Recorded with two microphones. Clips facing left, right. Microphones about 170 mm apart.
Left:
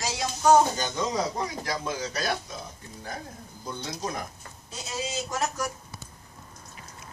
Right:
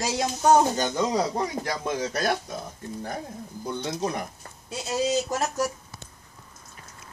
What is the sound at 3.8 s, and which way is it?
Speech, 55° right (ahead or behind).